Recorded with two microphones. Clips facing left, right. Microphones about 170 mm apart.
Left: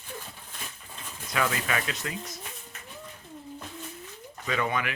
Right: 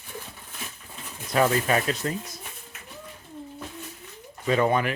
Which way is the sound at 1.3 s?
35° right (ahead or behind).